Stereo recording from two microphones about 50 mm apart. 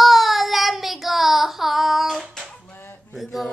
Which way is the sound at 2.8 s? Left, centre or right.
Left.